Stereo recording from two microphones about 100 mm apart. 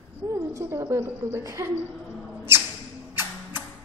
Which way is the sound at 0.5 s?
25° right (ahead or behind).